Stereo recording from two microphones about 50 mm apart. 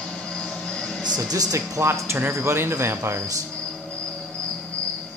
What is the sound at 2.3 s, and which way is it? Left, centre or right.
Speech, right.